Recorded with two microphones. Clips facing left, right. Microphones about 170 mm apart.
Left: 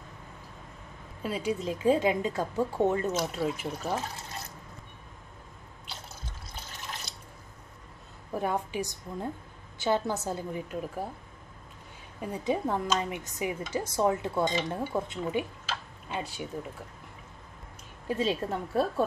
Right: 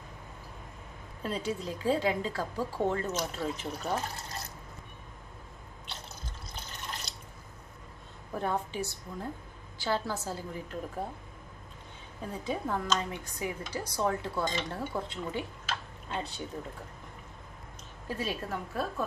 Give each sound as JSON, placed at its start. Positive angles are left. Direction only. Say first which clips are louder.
{"t": 1.2, "sound": "speech", "louder": "left 3 dB", "side_deg": 10}
{"t": 3.1, "sound": "speech", "louder": "left 4 dB", "side_deg": 5}
{"t": 6.5, "sound": "drip", "louder": "even", "side_deg": 0}
{"t": 8.3, "sound": "a woman's voice", "louder": "left 2 dB", "side_deg": 10}
{"t": 12.2, "sound": "speech", "louder": "left 5 dB", "side_deg": 20}
{"t": 12.8, "sound": "a woman's voice", "louder": "left 2 dB", "side_deg": 10}
{"t": 13.2, "sound": "a woman's voice", "louder": "left 3 dB", "side_deg": 20}
{"t": 18.0, "sound": "speech", "louder": "left 6 dB", "side_deg": 20}